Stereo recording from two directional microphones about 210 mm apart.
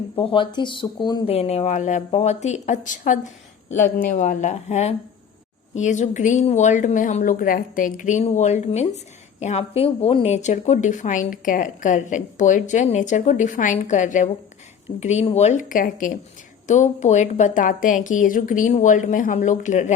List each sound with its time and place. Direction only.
0.2 s a woman's voice: 25° left (ahead or behind)